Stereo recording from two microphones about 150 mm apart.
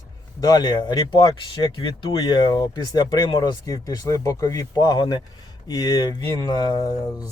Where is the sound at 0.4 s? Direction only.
25° left (ahead or behind).